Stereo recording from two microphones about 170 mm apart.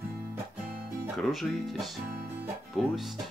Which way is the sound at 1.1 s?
Centre (ahead or behind).